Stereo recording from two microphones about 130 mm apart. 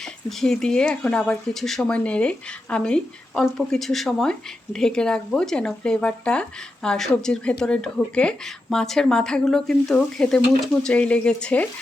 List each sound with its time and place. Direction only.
0.0 s speech: 5° left (ahead or behind)